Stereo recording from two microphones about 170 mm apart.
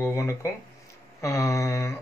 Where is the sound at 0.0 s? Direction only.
15° left (ahead or behind).